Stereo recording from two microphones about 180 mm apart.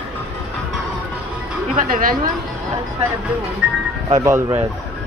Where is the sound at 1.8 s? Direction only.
50° right (ahead or behind).